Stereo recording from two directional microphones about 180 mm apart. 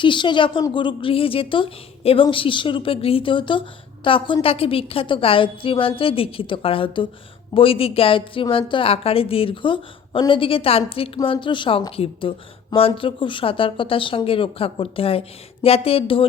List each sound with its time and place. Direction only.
0.0 s a woman's voice: 25° left (ahead or behind)